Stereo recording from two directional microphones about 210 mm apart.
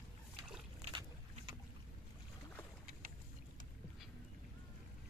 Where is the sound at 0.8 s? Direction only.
25° right (ahead or behind).